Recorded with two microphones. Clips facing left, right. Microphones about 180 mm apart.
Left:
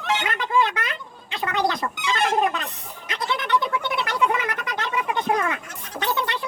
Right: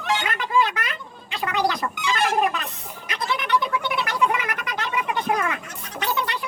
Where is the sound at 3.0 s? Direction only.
25° left (ahead or behind).